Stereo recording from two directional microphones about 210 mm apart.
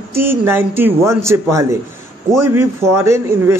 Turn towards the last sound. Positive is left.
turn(degrees=-15)  # may be behind; listen again after turning